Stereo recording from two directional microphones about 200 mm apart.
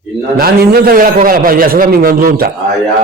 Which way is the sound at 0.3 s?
50° right (ahead or behind).